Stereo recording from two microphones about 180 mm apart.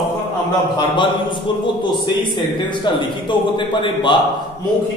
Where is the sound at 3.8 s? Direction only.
25° left (ahead or behind).